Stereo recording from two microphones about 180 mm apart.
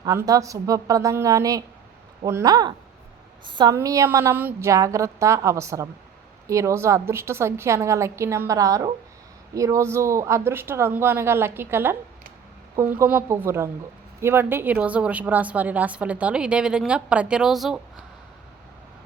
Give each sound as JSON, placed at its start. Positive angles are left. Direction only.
{"t": 0.0, "sound": "a woman's voice", "side_deg": -20}